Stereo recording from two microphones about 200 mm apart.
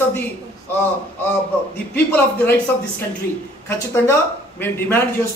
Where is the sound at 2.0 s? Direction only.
10° left (ahead or behind).